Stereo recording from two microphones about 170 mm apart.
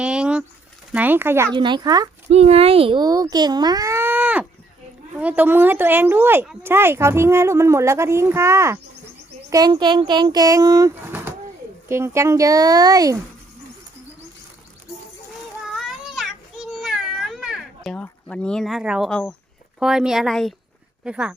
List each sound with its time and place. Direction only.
0.0 s a sound: 5° right (ahead or behind)
0.9 s speech: 10° right (ahead or behind)
1.5 s speech: 25° right (ahead or behind)
2.3 s a child's voice: 35° right (ahead or behind); by 13.1 s 20° right (ahead or behind)
15.7 s a sound: centre (ahead or behind)
17.9 s speech: 5° left (ahead or behind)